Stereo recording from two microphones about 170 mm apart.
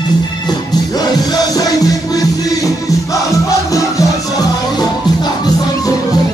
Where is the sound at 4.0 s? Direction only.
20° left (ahead or behind).